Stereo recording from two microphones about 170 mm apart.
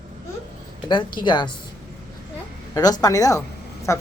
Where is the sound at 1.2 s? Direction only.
25° left (ahead or behind).